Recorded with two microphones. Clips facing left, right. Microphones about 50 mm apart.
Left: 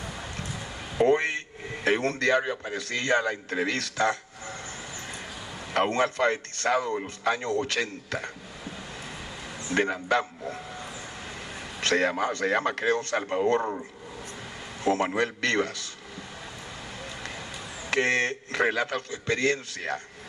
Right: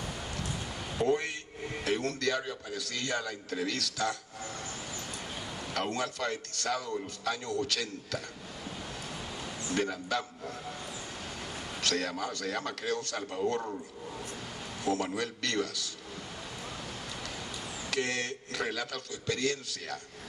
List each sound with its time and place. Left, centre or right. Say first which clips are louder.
0.9 s a man's voice: left 7 dB; left
5.7 s a man's voice: left 9 dB; left
9.7 s a man's voice: left 7 dB; left
11.8 s a man's voice: left 8 dB; left
17.8 s a man's voice: left 8 dB; left